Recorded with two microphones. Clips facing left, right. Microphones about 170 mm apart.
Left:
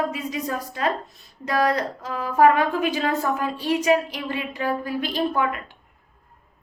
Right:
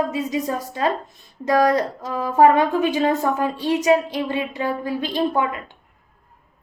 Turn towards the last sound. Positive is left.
turn(degrees=-20)  # may be behind; listen again after turning